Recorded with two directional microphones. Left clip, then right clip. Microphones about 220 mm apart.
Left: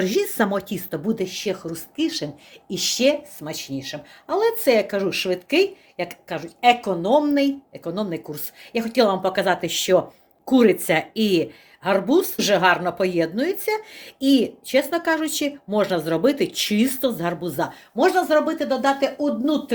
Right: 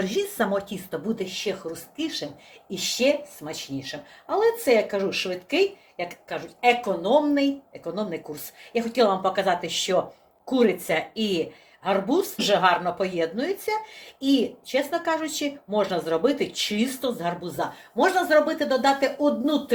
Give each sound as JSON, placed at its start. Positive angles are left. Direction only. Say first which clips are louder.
{"t": 0.0, "sound": "speech", "louder": "left 4 dB", "side_deg": 50}